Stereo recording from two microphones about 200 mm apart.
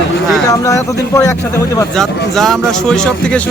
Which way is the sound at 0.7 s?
15° left (ahead or behind).